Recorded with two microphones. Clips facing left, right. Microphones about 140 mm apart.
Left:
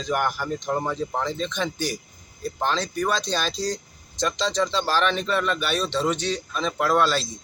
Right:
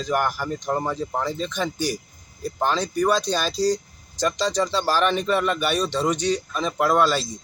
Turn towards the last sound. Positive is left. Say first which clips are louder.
# right 2 dB
turn(degrees=-10)  # may be behind; listen again after turning